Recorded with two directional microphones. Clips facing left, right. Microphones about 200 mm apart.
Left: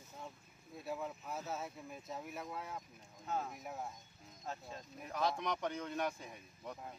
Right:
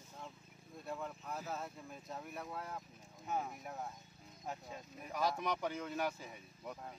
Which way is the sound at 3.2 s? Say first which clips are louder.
Even; 15° right (ahead or behind).